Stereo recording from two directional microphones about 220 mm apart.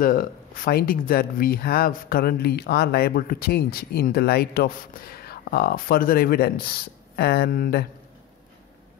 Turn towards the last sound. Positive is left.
turn(degrees=45)  # may be behind; listen again after turning